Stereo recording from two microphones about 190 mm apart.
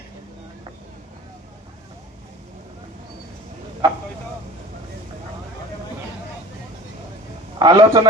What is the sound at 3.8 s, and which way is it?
Speech, 20° right (ahead or behind).